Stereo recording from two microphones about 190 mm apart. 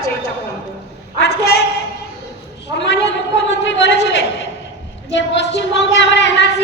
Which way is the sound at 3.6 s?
70° left (ahead or behind).